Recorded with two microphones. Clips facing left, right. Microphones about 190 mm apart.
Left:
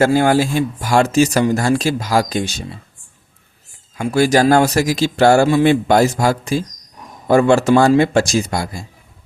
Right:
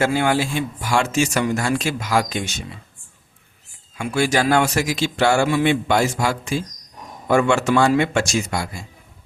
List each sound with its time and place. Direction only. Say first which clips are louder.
0.0 s speech: left 6 dB; 40° left (ahead or behind)
3.9 s speech: left 6 dB; 40° left (ahead or behind)